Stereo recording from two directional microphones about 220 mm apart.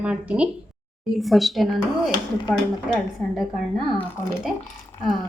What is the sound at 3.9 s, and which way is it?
Speech, 5° left (ahead or behind).